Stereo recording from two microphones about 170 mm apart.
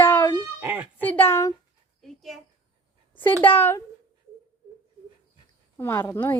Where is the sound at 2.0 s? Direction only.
Centre (ahead or behind).